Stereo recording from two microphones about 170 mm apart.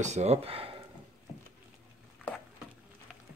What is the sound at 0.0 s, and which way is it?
Speech, 40° right (ahead or behind).